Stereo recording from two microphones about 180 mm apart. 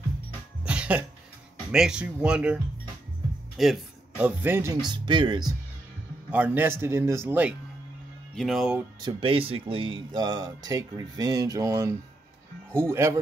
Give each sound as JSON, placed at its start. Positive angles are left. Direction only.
{"t": 0.7, "sound": "music", "side_deg": -5}
{"t": 1.7, "sound": "speech", "side_deg": -5}
{"t": 4.8, "sound": "speech", "side_deg": -25}
{"t": 6.3, "sound": "a man's voice", "side_deg": -10}
{"t": 8.4, "sound": "speech", "side_deg": 0}
{"t": 9.0, "sound": "a man's voice", "side_deg": -30}